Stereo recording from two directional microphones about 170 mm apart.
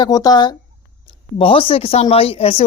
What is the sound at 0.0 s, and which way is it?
Speech, 25° left (ahead or behind).